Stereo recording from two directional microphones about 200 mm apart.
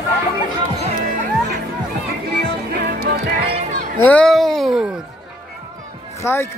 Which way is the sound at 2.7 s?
50° right (ahead or behind).